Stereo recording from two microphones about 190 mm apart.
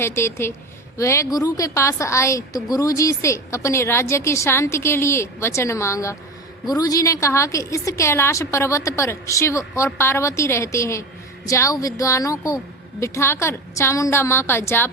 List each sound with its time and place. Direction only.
0.0 s a woman's voice: 15° left (ahead or behind)